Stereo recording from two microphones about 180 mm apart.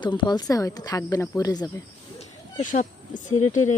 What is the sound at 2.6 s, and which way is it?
Speech, 45° left (ahead or behind).